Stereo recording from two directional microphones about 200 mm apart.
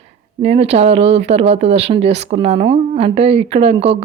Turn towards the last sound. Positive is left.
turn(degrees=-30)  # may be behind; listen again after turning